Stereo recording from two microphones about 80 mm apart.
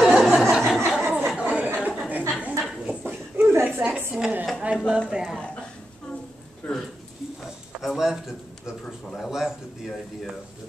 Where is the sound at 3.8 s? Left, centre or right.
Right.